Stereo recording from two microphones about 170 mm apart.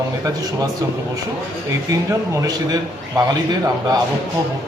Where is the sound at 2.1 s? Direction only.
20° right (ahead or behind).